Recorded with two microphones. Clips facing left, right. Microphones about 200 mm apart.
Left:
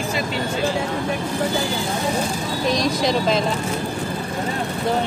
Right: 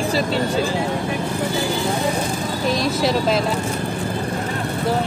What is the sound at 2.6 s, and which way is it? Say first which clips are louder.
Speech: even; 5° right (ahead or behind).